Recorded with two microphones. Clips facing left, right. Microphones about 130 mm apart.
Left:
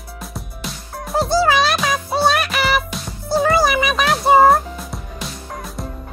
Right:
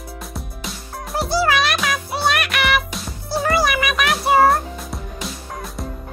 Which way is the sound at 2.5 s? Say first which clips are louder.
Left 1 dB; 30° left (ahead or behind).